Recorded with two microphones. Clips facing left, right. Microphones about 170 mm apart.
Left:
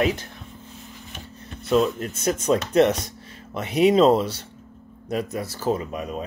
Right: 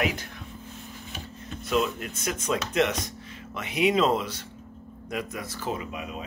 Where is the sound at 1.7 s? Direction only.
40° left (ahead or behind).